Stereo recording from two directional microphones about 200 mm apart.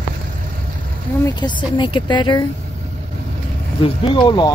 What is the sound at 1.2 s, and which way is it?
A woman's voice, 20° left (ahead or behind).